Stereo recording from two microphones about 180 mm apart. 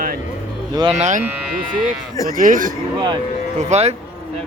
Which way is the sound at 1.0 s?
40° right (ahead or behind).